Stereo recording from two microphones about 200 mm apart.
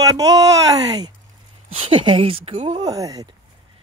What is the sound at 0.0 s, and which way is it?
Speech, 15° right (ahead or behind).